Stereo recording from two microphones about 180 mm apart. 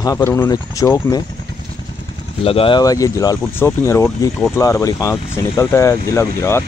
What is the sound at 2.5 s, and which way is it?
Speech, 30° left (ahead or behind).